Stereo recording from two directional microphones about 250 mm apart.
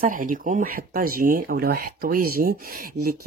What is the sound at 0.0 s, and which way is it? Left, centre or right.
Speech, right.